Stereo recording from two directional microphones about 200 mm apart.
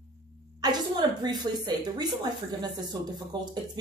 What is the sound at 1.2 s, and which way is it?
A woman's voice, 20° right (ahead or behind).